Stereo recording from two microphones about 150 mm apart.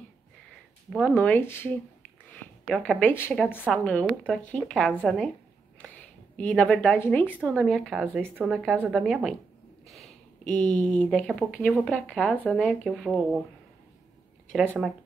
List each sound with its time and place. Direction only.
0.9 s speech: 5° left (ahead or behind)
5.8 s a sound: 10° left (ahead or behind)
7.3 s speech: centre (ahead or behind)
8.3 s speech: 15° right (ahead or behind)
8.9 s speech: centre (ahead or behind)
9.8 s a sound: centre (ahead or behind)
10.9 s speech: 10° left (ahead or behind)
14.5 s speech: 5° left (ahead or behind)